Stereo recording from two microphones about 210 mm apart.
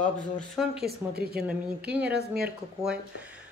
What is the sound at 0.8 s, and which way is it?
Speech, 45° right (ahead or behind).